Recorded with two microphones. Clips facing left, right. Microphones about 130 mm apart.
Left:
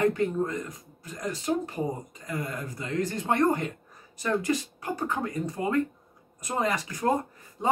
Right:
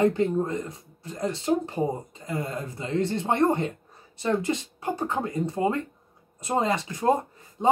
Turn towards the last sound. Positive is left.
turn(degrees=-20)  # may be behind; listen again after turning